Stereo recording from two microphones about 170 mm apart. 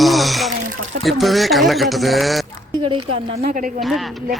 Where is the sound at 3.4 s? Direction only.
50° right (ahead or behind).